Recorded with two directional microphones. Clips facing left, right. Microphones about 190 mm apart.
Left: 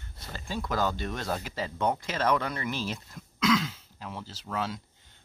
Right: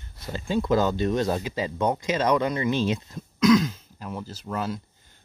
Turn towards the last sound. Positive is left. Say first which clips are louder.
# right 6 dB
turn(degrees=-10)  # may be behind; listen again after turning